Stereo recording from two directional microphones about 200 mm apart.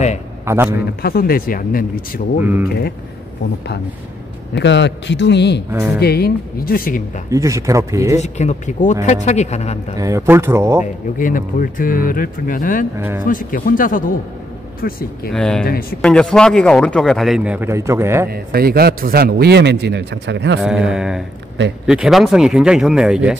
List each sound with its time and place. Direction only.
1.0 s speech: 45° left (ahead or behind)
2.4 s speech: 10° right (ahead or behind)
4.6 s a man's voice: 60° left (ahead or behind)
5.7 s speech: 10° right (ahead or behind)
5.9 s speech: 50° left (ahead or behind)
7.2 s speech: 15° right (ahead or behind)
8.2 s speech: 35° left (ahead or behind)
9.9 s speech: 15° right (ahead or behind)
11.1 s speech: 40° left (ahead or behind)
15.3 s a man's voice: 5° left (ahead or behind)
15.6 s speech: 50° left (ahead or behind)
16.0 s a man's voice: 5° left (ahead or behind); by 18.3 s 10° right (ahead or behind)
18.3 s a man's voice: 50° right (ahead or behind)
20.6 s a man's voice: 5° right (ahead or behind)